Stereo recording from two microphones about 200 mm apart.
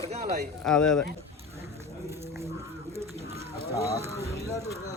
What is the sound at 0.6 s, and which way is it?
Speech, 5° left (ahead or behind).